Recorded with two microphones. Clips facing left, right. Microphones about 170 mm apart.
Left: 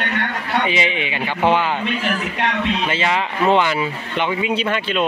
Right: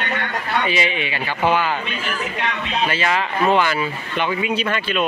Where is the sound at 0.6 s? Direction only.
20° left (ahead or behind).